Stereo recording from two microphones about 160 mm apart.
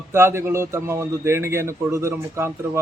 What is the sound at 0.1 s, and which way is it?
A man's voice, 15° right (ahead or behind).